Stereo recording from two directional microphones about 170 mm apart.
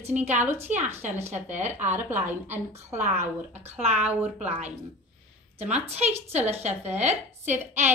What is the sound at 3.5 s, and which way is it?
A woman's voice, 40° right (ahead or behind).